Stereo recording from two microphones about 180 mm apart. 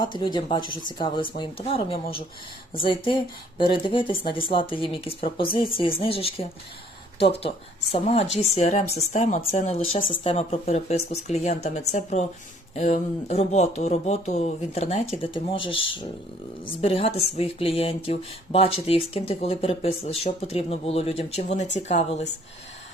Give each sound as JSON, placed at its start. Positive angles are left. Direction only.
{"t": 0.0, "sound": "speech", "side_deg": 25}